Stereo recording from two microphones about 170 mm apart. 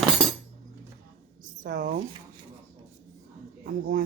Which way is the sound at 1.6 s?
50° right (ahead or behind).